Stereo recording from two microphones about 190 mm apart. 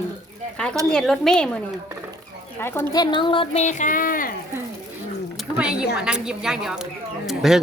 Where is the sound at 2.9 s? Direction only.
25° left (ahead or behind); by 4.4 s 45° left (ahead or behind).